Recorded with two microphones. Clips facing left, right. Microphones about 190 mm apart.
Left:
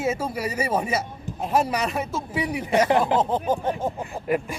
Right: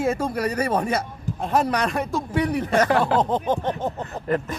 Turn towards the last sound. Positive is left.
turn(degrees=10)  # may be behind; listen again after turning